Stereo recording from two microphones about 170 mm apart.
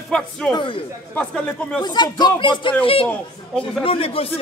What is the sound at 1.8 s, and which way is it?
Speech, 25° left (ahead or behind).